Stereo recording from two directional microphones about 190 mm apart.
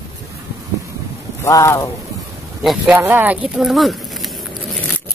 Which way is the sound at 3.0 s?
10° right (ahead or behind).